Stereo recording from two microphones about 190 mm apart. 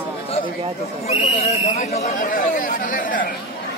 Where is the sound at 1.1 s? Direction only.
35° left (ahead or behind).